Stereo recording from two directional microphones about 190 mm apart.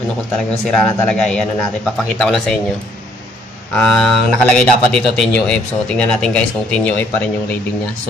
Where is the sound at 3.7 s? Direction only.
5° left (ahead or behind).